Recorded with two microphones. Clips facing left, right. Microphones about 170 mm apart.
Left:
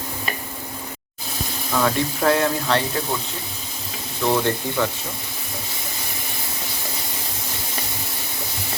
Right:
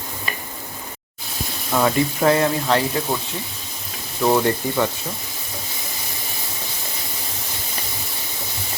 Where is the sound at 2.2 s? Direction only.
Centre (ahead or behind).